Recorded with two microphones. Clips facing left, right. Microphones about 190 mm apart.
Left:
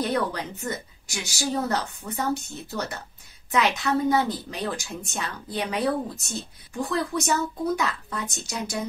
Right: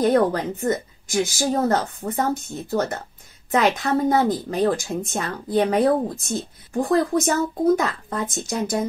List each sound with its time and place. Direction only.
0.0 s speech: 50° right (ahead or behind)